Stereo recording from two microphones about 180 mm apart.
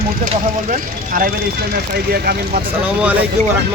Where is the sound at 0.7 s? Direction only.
55° right (ahead or behind).